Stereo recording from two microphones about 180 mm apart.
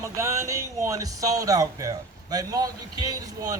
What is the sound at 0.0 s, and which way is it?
Speech, 15° right (ahead or behind).